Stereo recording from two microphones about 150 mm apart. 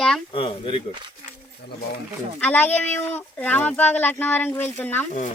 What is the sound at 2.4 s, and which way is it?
Speech, 10° left (ahead or behind).